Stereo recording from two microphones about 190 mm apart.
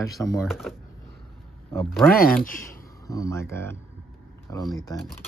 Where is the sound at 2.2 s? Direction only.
45° left (ahead or behind).